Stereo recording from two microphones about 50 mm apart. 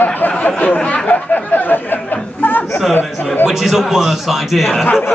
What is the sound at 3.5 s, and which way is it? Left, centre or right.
A man's voice, centre.